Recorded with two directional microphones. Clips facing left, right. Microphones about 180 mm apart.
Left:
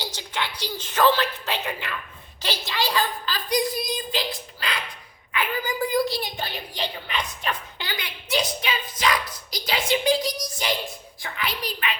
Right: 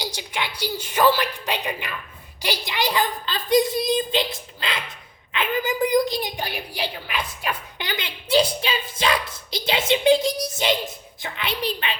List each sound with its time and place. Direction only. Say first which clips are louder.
0.0 s a woman's voice: right 1 dB; 10° right (ahead or behind); by 11.9 s 30° right (ahead or behind)